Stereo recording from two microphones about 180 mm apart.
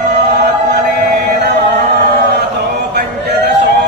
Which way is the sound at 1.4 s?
70° right (ahead or behind).